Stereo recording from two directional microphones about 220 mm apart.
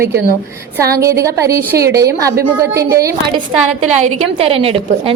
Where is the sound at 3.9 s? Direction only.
25° right (ahead or behind).